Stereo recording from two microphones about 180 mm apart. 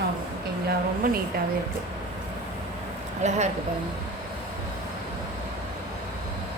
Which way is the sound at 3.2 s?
40° right (ahead or behind).